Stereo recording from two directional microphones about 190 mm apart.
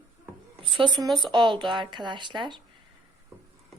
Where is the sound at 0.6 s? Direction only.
25° right (ahead or behind).